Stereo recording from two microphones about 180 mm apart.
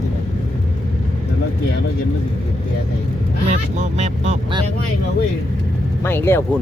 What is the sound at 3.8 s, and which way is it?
Speech, 40° right (ahead or behind).